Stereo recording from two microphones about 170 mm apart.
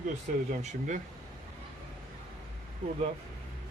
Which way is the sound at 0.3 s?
50° right (ahead or behind).